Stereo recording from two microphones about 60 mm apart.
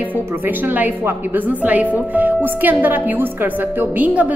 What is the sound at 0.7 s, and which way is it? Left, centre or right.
Speech, right.